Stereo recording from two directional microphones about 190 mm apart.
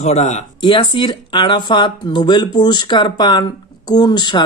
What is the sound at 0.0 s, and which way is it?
Speech, 35° left (ahead or behind).